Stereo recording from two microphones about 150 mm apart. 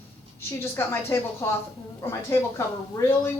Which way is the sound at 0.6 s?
15° left (ahead or behind).